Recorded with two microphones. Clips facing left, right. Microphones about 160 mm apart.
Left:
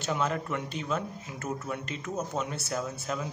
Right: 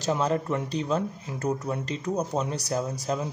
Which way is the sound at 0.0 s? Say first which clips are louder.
Right 5 dB; 35° right (ahead or behind).